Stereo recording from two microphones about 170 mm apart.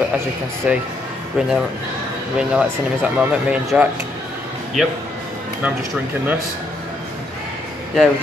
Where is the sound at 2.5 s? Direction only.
5° right (ahead or behind).